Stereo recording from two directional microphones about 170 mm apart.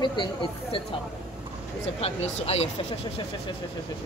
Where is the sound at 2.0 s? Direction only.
35° left (ahead or behind).